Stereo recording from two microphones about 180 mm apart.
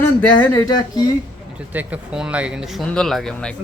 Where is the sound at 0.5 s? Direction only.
25° left (ahead or behind).